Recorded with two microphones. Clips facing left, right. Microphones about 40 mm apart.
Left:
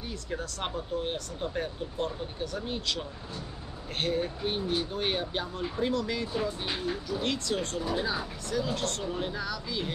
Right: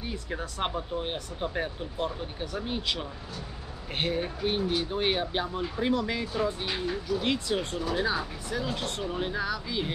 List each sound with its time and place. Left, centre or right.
0.0 s speech: centre